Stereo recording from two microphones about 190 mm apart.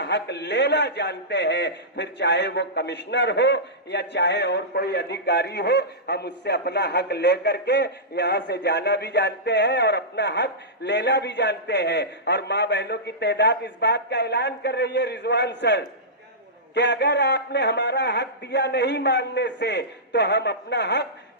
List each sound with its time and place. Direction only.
0.0 s a man's voice: 65° left (ahead or behind)